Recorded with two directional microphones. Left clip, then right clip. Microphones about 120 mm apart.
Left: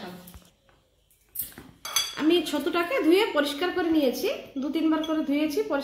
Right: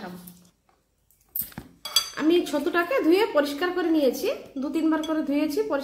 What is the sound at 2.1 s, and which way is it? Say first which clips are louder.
Speech: even; 40° left (ahead or behind).